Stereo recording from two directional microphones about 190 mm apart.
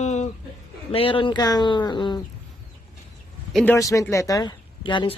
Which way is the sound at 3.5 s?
5° left (ahead or behind).